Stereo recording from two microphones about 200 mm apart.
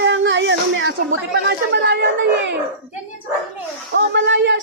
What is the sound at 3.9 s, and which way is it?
Speech, 65° right (ahead or behind).